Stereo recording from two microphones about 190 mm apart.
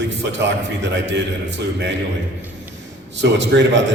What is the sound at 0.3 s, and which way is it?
Speech, 70° right (ahead or behind).